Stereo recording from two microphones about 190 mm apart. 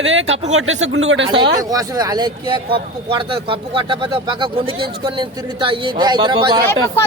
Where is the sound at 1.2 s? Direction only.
25° right (ahead or behind).